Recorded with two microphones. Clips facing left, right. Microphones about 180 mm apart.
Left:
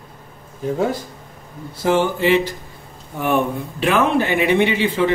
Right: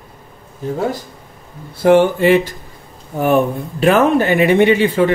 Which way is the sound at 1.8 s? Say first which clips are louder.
Right 7 dB; 60° right (ahead or behind).